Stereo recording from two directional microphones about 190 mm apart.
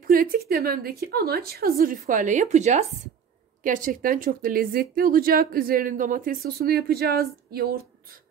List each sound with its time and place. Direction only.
0.0 s speech: 50° right (ahead or behind)